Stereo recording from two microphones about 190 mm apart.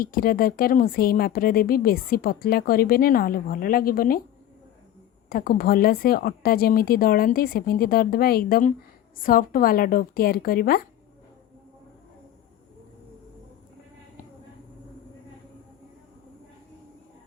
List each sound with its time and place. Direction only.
0.0 s speech: 50° left (ahead or behind)
5.3 s speech: 50° left (ahead or behind)